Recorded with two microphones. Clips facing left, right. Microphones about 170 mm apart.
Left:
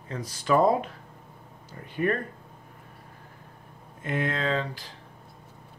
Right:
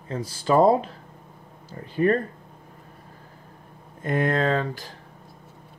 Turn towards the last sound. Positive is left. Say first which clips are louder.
# right 4 dB
turn(degrees=-45)  # may be behind; listen again after turning